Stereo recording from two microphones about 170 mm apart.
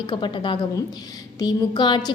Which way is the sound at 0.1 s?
30° left (ahead or behind).